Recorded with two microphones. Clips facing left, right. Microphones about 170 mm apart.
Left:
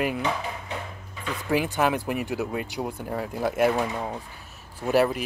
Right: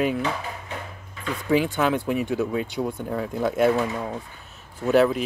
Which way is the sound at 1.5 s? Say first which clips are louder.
Right 2 dB; 10° left (ahead or behind).